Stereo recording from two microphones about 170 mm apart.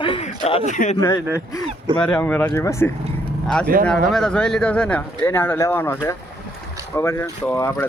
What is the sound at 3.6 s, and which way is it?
Speech, 60° right (ahead or behind).